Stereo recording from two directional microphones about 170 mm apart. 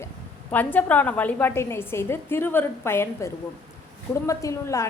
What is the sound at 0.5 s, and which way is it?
A woman's voice, 10° left (ahead or behind).